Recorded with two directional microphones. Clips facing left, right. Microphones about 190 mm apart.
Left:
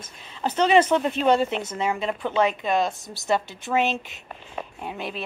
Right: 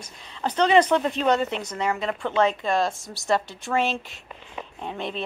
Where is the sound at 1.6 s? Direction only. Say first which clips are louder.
Left 1 dB; 25° left (ahead or behind).